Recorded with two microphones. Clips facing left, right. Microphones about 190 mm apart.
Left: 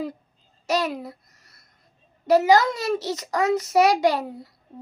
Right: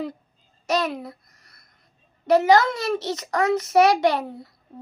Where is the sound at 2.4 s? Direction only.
15° left (ahead or behind).